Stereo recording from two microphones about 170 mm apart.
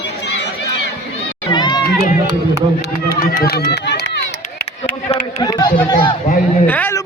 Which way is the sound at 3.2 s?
65° left (ahead or behind).